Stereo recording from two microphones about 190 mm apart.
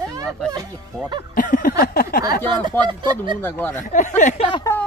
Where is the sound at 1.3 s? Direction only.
45° left (ahead or behind).